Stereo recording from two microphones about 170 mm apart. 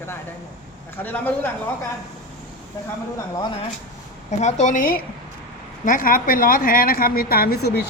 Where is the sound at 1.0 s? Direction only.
10° left (ahead or behind).